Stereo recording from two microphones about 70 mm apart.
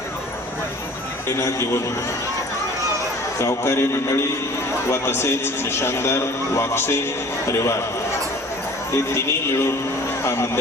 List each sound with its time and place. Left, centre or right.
1.4 s speech: left
3.3 s a man's voice: left
8.9 s a man's voice: left